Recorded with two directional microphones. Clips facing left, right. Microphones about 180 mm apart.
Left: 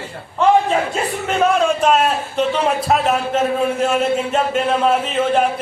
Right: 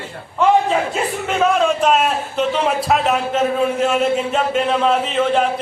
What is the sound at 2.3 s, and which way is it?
A man's voice, centre (ahead or behind).